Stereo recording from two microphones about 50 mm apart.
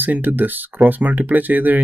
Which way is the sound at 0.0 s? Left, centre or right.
Right.